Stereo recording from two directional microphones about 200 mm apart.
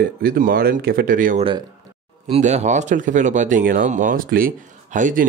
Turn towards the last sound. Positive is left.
turn(degrees=-40)  # may be behind; listen again after turning